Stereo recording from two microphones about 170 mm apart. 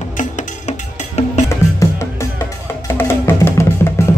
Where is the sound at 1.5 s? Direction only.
15° left (ahead or behind).